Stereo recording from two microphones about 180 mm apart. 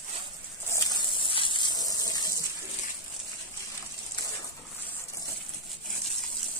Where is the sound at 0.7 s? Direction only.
20° left (ahead or behind).